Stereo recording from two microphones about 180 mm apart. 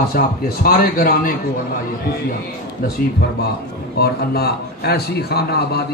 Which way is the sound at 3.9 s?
60° left (ahead or behind).